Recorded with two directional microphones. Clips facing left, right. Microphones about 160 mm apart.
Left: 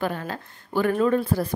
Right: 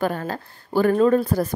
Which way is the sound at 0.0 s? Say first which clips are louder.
Right 4 dB; 45° right (ahead or behind).